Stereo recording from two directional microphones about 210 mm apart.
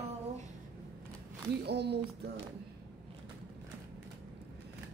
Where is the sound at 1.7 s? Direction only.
50° right (ahead or behind).